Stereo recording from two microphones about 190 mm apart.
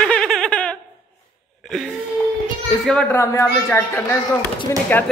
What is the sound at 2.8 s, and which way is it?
Speech, 5° left (ahead or behind).